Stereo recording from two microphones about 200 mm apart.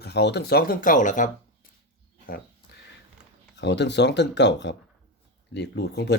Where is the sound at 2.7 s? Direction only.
55° left (ahead or behind).